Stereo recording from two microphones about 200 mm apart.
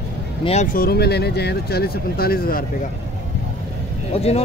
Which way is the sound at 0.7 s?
50° left (ahead or behind).